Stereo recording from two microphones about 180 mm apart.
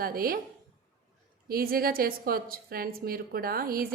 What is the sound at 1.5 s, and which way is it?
A woman's voice, 55° right (ahead or behind).